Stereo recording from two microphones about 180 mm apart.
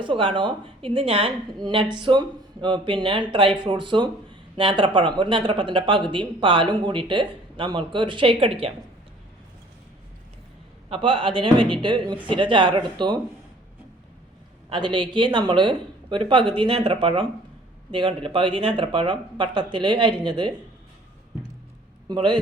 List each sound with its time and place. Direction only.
0.0 s speech: 30° right (ahead or behind)
10.8 s speech: 30° right (ahead or behind)
14.7 s speech: 25° right (ahead or behind)
22.1 s speech: 25° right (ahead or behind)